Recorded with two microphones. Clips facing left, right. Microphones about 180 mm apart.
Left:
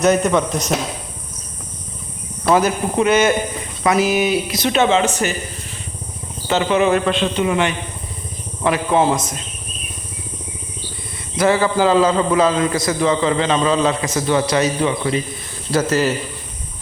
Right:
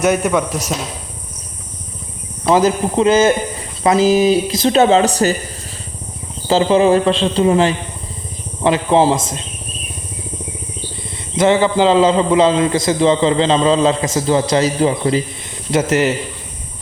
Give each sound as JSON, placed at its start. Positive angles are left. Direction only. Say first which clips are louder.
{"t": 0.0, "sound": "a man's voice", "louder": "even", "side_deg": -10}
{"t": 2.4, "sound": "a man's voice", "louder": "right 3 dB", "side_deg": -25}
{"t": 6.5, "sound": "a man's voice", "louder": "right 4 dB", "side_deg": -30}
{"t": 11.3, "sound": "a man's voice", "louder": "right 3 dB", "side_deg": -20}
{"t": 15.7, "sound": "a man's voice", "louder": "right 2 dB", "side_deg": -20}